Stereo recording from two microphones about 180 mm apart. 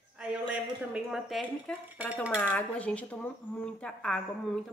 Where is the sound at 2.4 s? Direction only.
5° left (ahead or behind).